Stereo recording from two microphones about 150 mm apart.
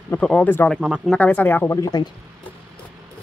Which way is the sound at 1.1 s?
10° left (ahead or behind).